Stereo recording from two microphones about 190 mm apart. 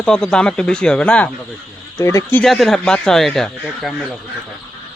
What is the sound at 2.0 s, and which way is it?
Speech, 15° left (ahead or behind).